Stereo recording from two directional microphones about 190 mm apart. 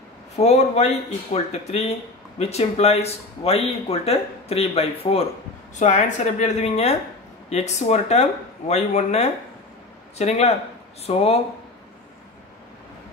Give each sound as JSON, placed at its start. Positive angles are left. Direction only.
{"t": 0.4, "sound": "speech", "side_deg": 35}